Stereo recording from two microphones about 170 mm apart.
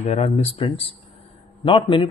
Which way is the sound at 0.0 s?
40° left (ahead or behind).